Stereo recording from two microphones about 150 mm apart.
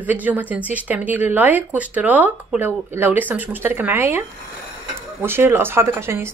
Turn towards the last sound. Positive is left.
turn(degrees=-15)  # may be behind; listen again after turning